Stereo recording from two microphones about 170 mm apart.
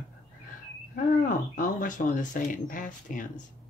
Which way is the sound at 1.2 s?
50° left (ahead or behind).